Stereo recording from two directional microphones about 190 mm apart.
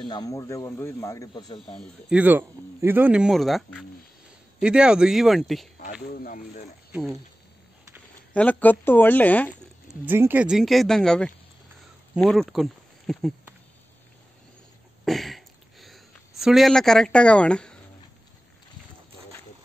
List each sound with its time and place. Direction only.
0.1 s speech: 20° left (ahead or behind)
1.8 s speech: 5° right (ahead or behind)
6.0 s speech: 50° left (ahead or behind)
8.3 s speech: 10° left (ahead or behind)
10.0 s speech: 10° right (ahead or behind)
15.0 s a sound: centre (ahead or behind)